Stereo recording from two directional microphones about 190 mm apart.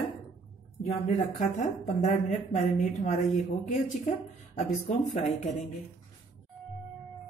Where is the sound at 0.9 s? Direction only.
40° left (ahead or behind).